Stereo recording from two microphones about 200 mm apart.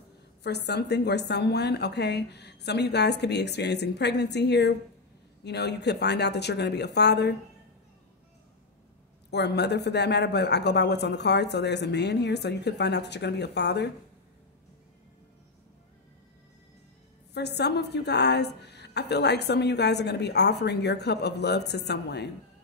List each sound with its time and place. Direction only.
0.4 s a woman's voice: 55° left (ahead or behind)
9.3 s a woman's voice: 55° left (ahead or behind)
17.3 s a woman's voice: 55° left (ahead or behind)